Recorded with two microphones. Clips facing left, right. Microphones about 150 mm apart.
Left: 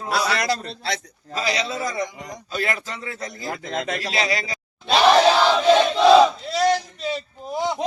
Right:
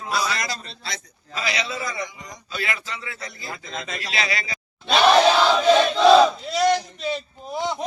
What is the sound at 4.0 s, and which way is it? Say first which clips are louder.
Speech: left 4 dB; 40° left (ahead or behind).